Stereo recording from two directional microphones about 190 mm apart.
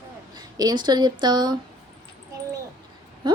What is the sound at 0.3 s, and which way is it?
Speech, 20° right (ahead or behind).